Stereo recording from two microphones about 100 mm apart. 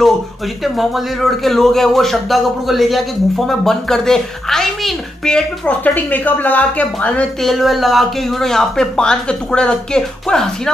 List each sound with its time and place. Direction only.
0.7 s a man's voice: centre (ahead or behind)
5.9 s speech: 15° left (ahead or behind)
7.4 s a man's voice: centre (ahead or behind)